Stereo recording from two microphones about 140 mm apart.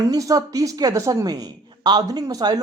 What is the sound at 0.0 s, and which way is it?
Speech, 25° right (ahead or behind).